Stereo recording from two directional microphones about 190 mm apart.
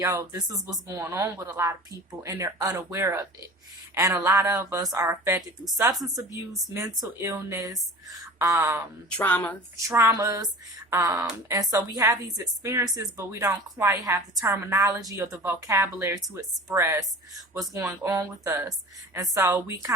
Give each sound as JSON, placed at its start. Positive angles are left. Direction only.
{"t": 0.0, "sound": "speech", "side_deg": -15}
{"t": 9.0, "sound": "speech", "side_deg": 5}
{"t": 9.8, "sound": "speech", "side_deg": -15}